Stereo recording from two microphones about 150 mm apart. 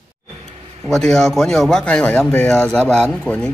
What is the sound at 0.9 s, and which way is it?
Speech, 5° left (ahead or behind).